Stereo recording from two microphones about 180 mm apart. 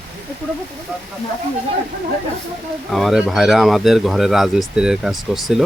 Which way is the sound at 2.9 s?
Centre (ahead or behind).